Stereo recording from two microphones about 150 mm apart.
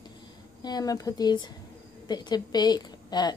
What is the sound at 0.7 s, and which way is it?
A woman's voice, 25° left (ahead or behind).